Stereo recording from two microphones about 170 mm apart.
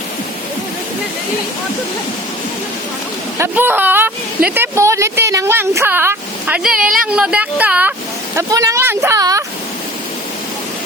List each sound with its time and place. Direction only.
3.3 s a woman's voice: 15° right (ahead or behind)